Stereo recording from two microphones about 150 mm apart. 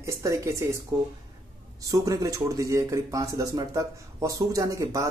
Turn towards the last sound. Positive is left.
turn(degrees=-20)  # may be behind; listen again after turning